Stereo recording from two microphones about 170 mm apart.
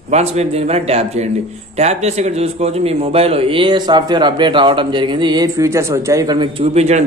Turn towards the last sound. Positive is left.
turn(degrees=-40)  # may be behind; listen again after turning